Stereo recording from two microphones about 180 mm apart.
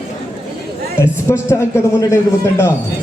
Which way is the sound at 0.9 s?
15° left (ahead or behind).